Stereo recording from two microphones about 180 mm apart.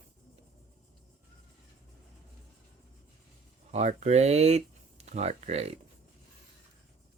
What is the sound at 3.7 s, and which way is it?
Speech, 40° right (ahead or behind).